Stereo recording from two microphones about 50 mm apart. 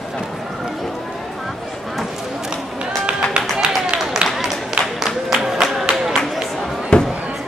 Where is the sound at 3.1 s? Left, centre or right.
Centre.